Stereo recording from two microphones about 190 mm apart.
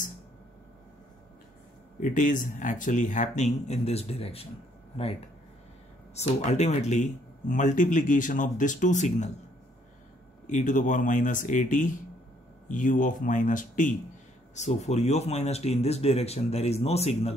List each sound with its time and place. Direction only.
2.0 s speech: 45° left (ahead or behind)
6.1 s speech: 35° left (ahead or behind)
10.4 s speech: 40° left (ahead or behind)